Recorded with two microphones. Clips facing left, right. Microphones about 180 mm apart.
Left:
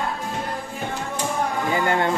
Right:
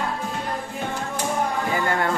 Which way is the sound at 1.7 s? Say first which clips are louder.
Left 5 dB; 25° left (ahead or behind).